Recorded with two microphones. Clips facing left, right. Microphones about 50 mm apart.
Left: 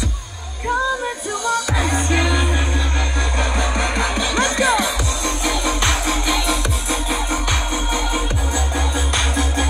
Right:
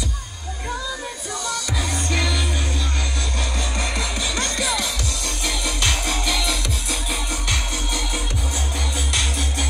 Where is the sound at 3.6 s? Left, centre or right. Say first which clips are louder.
Left 5 dB; left.